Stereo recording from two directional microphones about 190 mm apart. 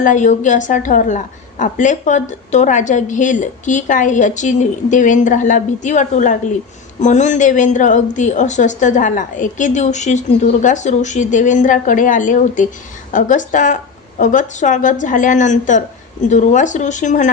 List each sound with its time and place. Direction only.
0.0 s a woman's voice: 40° left (ahead or behind)